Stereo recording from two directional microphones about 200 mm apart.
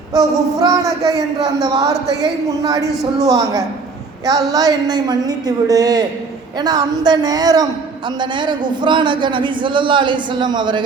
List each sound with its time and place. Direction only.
0.1 s a man's voice: 20° right (ahead or behind)